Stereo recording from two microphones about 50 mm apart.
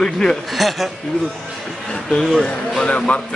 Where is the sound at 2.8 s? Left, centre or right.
Left.